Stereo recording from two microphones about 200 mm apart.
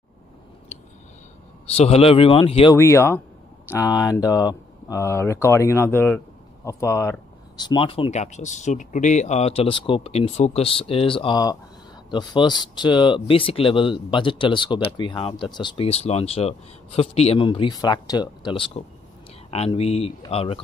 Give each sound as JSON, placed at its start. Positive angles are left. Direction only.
{"t": 1.8, "sound": "speech", "side_deg": 30}
{"t": 2.8, "sound": "speech", "side_deg": 15}